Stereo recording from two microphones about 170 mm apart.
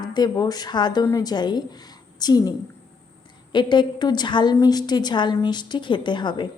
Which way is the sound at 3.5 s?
25° left (ahead or behind).